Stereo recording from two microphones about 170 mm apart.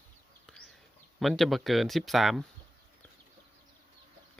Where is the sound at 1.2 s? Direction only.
Centre (ahead or behind).